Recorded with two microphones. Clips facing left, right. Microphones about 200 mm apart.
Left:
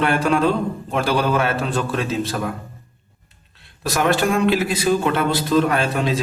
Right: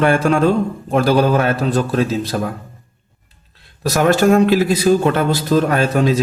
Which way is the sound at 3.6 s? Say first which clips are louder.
Right 5 dB; 40° right (ahead or behind).